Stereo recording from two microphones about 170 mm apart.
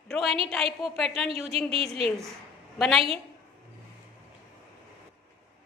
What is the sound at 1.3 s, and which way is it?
Speech, 35° right (ahead or behind).